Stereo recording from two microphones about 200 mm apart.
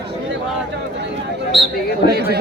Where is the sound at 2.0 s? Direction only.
55° left (ahead or behind).